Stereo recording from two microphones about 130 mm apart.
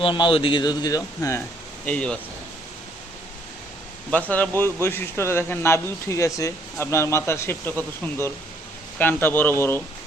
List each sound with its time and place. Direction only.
0.0 s a man's voice: 40° left (ahead or behind)
1.9 s speech: 10° left (ahead or behind)
4.1 s speech: 10° left (ahead or behind)